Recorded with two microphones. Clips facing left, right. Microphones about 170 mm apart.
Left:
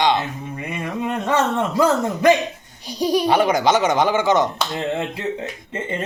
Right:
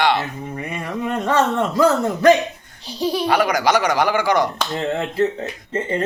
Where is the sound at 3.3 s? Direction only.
25° left (ahead or behind).